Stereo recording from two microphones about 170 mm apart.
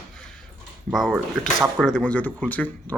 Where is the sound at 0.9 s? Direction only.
Centre (ahead or behind).